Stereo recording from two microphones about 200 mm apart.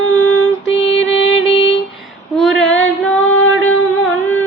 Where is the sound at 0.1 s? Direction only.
90° left; by 1.7 s 70° left (ahead or behind).